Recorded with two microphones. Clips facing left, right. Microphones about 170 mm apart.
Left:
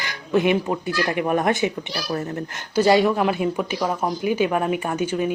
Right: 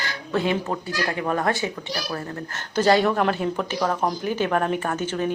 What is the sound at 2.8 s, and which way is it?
Speech, 10° left (ahead or behind).